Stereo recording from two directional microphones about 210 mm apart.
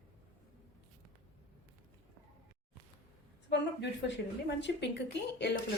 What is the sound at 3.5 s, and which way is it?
A woman's voice, 55° left (ahead or behind).